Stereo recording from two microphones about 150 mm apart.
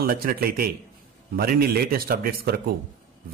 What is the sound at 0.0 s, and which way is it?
A man's voice, 80° right.